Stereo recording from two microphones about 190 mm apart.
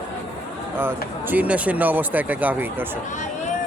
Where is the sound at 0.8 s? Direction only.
10° right (ahead or behind).